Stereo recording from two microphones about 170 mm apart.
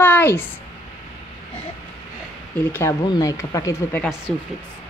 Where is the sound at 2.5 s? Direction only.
15° left (ahead or behind).